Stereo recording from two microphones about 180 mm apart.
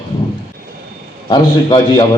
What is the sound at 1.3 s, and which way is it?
Speech, 25° left (ahead or behind).